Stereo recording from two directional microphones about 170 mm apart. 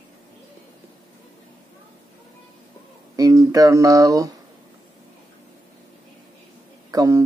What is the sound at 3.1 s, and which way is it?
Speech, 20° right (ahead or behind).